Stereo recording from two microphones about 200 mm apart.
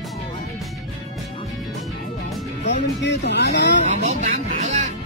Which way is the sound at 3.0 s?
60° left (ahead or behind).